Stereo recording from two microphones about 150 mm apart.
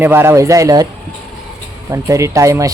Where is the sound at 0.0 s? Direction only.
15° right (ahead or behind).